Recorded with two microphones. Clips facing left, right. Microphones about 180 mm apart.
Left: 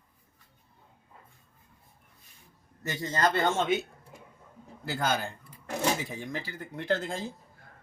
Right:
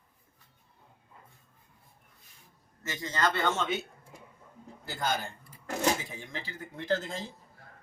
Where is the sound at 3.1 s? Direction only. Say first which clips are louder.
Left 3 dB; 45° left (ahead or behind).